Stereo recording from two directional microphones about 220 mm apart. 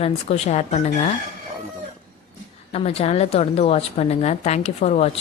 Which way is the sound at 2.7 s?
25° left (ahead or behind).